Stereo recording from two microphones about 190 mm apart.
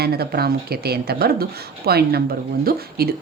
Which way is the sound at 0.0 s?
55° right (ahead or behind).